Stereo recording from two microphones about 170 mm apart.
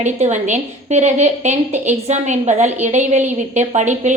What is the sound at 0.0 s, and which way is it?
A woman's voice, 45° right (ahead or behind).